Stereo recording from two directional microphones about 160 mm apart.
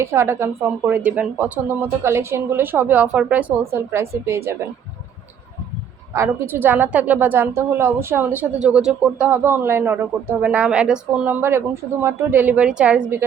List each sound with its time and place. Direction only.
0.0 s a woman's voice: 15° right (ahead or behind)
6.1 s a woman's voice: 15° right (ahead or behind)